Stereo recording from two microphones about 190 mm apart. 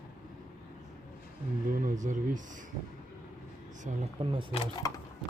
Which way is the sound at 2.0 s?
40° right (ahead or behind).